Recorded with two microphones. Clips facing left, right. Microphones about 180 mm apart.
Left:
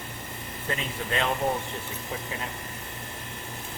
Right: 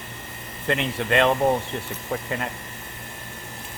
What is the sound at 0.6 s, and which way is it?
Speech, 70° right (ahead or behind).